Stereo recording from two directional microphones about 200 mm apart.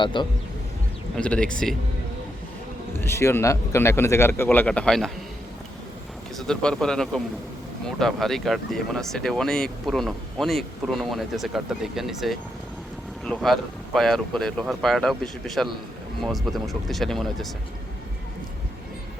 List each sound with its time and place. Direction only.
0.0 s speech: 25° left (ahead or behind)
1.1 s speech: 5° left (ahead or behind)
3.0 s speech: 10° left (ahead or behind)
6.3 s speech: 5° left (ahead or behind)